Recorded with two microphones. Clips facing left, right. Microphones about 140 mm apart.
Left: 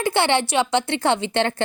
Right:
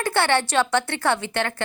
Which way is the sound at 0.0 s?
15° left (ahead or behind).